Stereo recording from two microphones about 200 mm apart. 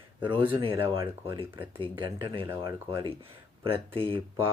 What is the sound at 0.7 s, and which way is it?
Speech, 10° right (ahead or behind).